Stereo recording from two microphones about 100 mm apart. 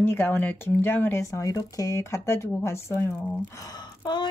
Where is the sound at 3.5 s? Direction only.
35° left (ahead or behind).